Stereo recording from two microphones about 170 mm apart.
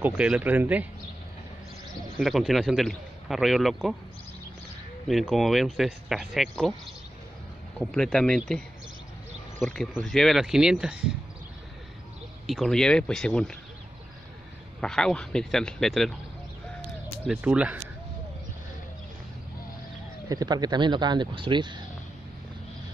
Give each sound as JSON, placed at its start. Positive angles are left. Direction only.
{"t": 0.0, "sound": "speech", "side_deg": -10}
{"t": 2.1, "sound": "a man's voice", "side_deg": 0}
{"t": 5.0, "sound": "a man's voice", "side_deg": 0}
{"t": 7.8, "sound": "a man's voice", "side_deg": 5}
{"t": 12.4, "sound": "a man's voice", "side_deg": 0}
{"t": 14.8, "sound": "a man's voice", "side_deg": 5}
{"t": 17.3, "sound": "speech", "side_deg": -5}
{"t": 20.2, "sound": "speech", "side_deg": -25}